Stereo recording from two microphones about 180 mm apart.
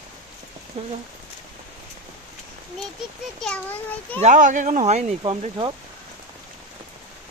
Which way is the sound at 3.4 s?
5° left (ahead or behind).